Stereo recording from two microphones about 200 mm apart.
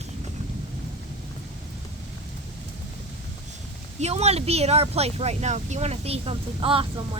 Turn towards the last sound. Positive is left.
turn(degrees=-25)  # may be behind; listen again after turning